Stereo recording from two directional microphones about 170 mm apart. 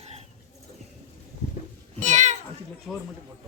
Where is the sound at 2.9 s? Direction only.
5° left (ahead or behind).